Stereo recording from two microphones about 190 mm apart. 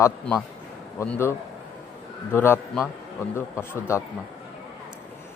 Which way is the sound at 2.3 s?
10° left (ahead or behind).